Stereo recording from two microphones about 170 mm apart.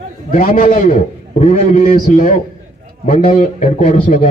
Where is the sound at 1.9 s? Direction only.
55° left (ahead or behind).